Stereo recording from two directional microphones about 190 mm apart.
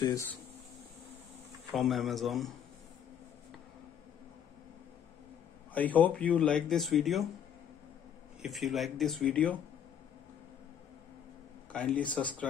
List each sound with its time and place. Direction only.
0.0 s speech: 15° left (ahead or behind)
1.8 s speech: centre (ahead or behind)
5.8 s speech: 10° left (ahead or behind)
8.4 s speech: centre (ahead or behind)
11.7 s speech: 5° left (ahead or behind)